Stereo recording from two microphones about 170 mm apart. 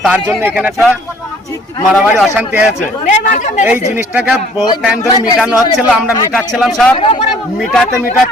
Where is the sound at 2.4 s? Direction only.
5° right (ahead or behind).